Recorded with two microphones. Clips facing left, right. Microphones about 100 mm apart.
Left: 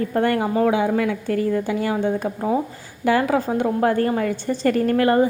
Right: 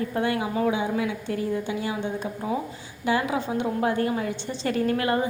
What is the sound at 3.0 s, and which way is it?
A woman's voice, 55° left (ahead or behind).